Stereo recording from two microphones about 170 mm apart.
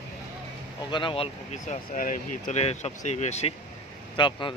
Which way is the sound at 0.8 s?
30° left (ahead or behind).